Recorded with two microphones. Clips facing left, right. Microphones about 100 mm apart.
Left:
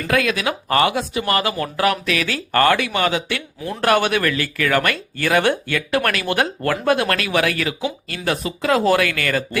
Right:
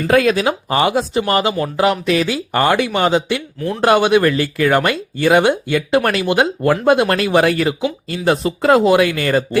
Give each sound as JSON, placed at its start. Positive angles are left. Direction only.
{"t": 0.1, "sound": "speech", "side_deg": -35}
{"t": 8.8, "sound": "speech", "side_deg": -20}